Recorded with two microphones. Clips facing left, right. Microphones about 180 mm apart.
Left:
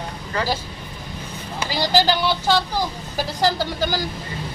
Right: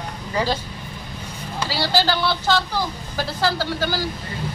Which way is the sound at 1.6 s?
15° left (ahead or behind).